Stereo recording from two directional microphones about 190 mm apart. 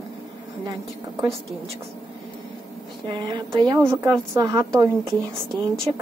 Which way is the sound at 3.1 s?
25° right (ahead or behind).